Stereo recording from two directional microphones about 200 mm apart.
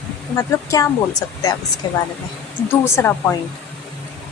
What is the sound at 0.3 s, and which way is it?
A woman's voice, 15° left (ahead or behind).